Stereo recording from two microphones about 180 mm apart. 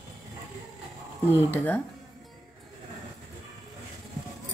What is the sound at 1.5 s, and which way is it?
Speech, 10° left (ahead or behind).